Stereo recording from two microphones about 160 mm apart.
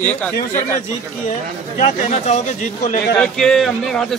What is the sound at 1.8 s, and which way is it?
Speech, 45° left (ahead or behind).